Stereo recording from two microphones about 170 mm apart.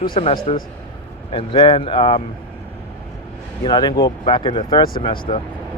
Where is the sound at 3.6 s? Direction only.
25° left (ahead or behind).